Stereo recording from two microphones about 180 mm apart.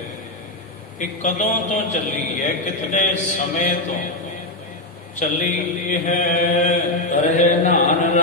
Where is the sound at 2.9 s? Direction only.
45° left (ahead or behind).